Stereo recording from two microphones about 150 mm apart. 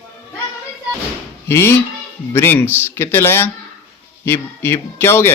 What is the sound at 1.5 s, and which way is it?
Speech, 15° left (ahead or behind).